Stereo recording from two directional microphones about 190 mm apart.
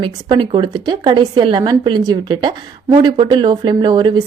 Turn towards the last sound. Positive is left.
turn(degrees=-25)  # may be behind; listen again after turning